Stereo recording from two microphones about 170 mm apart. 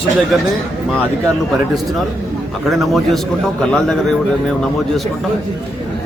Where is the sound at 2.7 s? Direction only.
Centre (ahead or behind).